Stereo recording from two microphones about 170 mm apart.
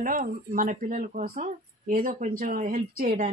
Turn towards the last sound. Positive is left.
turn(degrees=-45)  # may be behind; listen again after turning